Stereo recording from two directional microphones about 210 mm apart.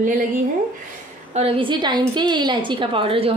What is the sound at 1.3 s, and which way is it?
A woman's voice, 25° right (ahead or behind).